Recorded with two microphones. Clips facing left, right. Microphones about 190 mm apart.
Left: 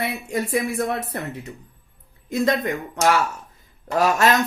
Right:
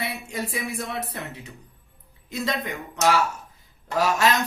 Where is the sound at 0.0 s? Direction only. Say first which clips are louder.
Left 5 dB; 50° left (ahead or behind).